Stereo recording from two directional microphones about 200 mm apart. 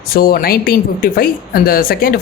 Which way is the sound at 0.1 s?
45° left (ahead or behind).